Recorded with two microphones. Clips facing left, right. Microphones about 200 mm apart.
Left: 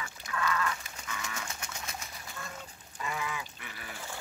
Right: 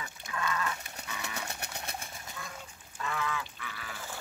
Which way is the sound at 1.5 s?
60° right (ahead or behind).